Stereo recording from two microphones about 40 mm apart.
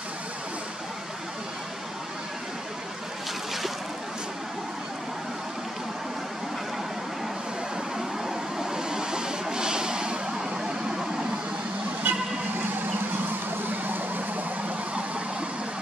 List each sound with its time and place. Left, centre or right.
8.5 s vehicle: centre
12.0 s vehicle: right
13.8 s vehicle: right